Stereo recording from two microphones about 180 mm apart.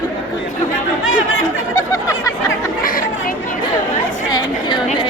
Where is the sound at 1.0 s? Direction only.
90° left.